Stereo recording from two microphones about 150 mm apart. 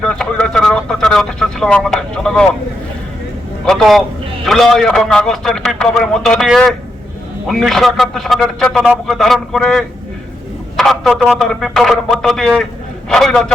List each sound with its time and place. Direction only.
0.0 s speech: 5° left (ahead or behind)
3.7 s speech: centre (ahead or behind)